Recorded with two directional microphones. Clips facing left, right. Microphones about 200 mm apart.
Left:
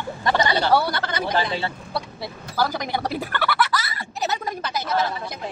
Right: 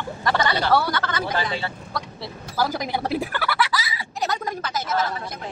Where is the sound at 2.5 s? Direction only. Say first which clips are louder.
Even; 5° right (ahead or behind).